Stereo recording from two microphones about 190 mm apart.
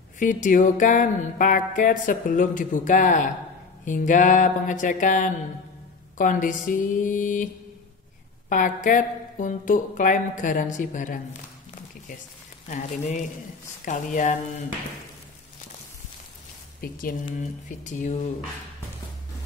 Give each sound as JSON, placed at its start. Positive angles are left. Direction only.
{"t": 0.2, "sound": "music", "side_deg": 45}
{"t": 8.5, "sound": "music", "side_deg": 45}
{"t": 12.6, "sound": "speech", "side_deg": 40}
{"t": 16.8, "sound": "music", "side_deg": 45}
{"t": 17.6, "sound": "speech", "side_deg": 40}